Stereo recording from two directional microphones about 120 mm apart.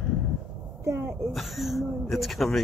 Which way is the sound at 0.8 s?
20° right (ahead or behind).